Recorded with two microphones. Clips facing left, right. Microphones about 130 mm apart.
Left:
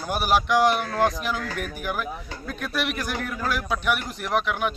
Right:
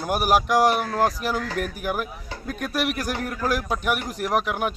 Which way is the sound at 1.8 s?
40° right (ahead or behind).